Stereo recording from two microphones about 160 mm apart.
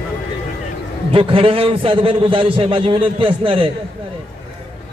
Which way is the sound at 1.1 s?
35° right (ahead or behind).